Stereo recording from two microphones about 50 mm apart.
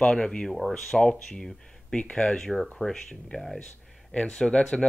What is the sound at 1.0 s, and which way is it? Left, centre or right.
Speech, centre.